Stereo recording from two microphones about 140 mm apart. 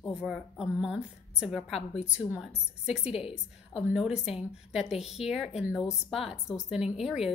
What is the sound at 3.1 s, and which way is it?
Speech, 45° left (ahead or behind).